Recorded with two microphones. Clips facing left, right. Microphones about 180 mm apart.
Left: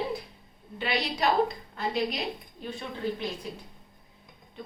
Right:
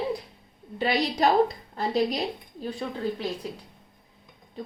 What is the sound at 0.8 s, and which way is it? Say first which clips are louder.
A woman's voice: right 5 dB; 40° right (ahead or behind).